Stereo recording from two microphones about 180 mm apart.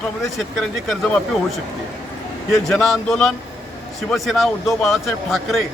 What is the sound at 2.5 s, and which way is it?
Speech, centre (ahead or behind).